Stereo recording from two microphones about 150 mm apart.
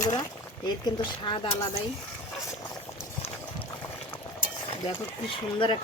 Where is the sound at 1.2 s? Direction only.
35° left (ahead or behind).